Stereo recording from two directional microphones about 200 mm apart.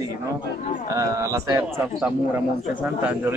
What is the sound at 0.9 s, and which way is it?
Speech, 15° right (ahead or behind).